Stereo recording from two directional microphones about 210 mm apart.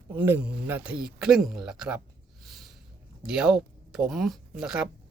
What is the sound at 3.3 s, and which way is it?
Speech, 5° right (ahead or behind).